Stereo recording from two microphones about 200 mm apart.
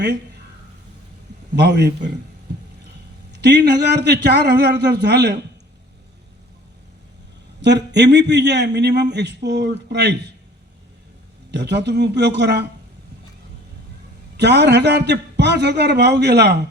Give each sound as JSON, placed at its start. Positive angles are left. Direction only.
{"t": 1.5, "sound": "a man's voice", "side_deg": -55}
{"t": 3.3, "sound": "a man's voice", "side_deg": -55}
{"t": 7.6, "sound": "a man's voice", "side_deg": -60}
{"t": 11.5, "sound": "a man's voice", "side_deg": -60}
{"t": 14.3, "sound": "a man's voice", "side_deg": -60}